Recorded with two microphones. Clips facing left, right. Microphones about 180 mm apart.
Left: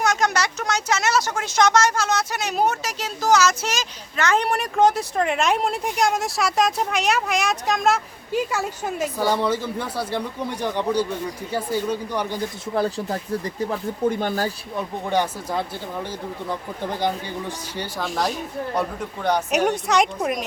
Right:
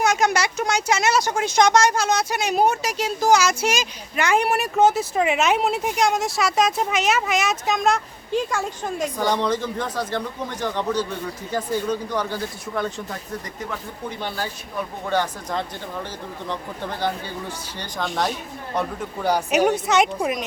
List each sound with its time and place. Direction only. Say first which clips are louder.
0.0 s speech: right 2 dB; 10° right (ahead or behind); by 12.5 s 15° left (ahead or behind)
12.7 s speech: left 5 dB; 35° left (ahead or behind)
14.1 s speech: left 5 dB; 45° left (ahead or behind)
15.0 s speech: left 1 dB; 15° left (ahead or behind)
17.7 s speech: even; 5° left (ahead or behind)